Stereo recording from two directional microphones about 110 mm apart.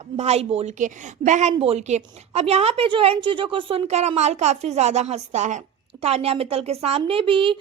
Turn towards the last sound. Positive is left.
turn(degrees=-55)  # may be behind; listen again after turning